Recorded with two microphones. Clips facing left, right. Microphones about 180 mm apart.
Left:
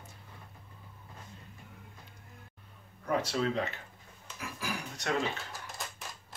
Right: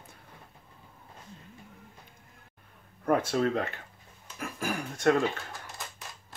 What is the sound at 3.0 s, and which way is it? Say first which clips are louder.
Speech: right 5 dB; 50° right (ahead or behind).